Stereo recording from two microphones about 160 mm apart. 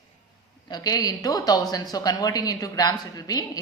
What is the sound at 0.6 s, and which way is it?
A woman's voice, 25° left (ahead or behind).